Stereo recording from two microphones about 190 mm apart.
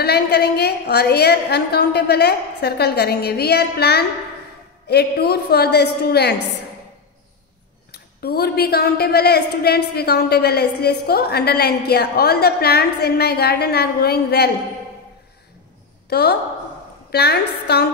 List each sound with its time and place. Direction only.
0.0 s a woman's voice: 60° left (ahead or behind)
7.9 s a woman's voice: 55° left (ahead or behind)
16.1 s a woman's voice: 60° left (ahead or behind)